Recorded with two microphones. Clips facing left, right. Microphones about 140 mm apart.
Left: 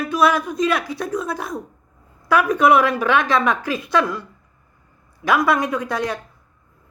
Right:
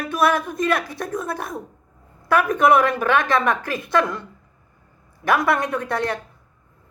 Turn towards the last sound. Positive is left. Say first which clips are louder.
# even
turn(degrees=-60)  # may be behind; listen again after turning